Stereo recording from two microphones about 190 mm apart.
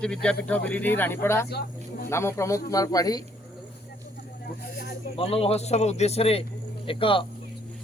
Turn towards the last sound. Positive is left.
turn(degrees=25)  # may be behind; listen again after turning